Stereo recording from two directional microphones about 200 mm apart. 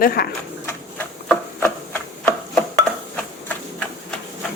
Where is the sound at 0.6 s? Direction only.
10° left (ahead or behind).